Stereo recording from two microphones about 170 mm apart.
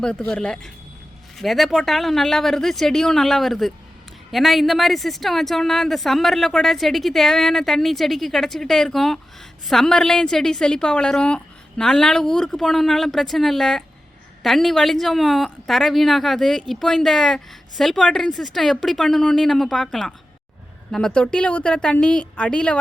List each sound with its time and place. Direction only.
0.0 s speech: 5° left (ahead or behind)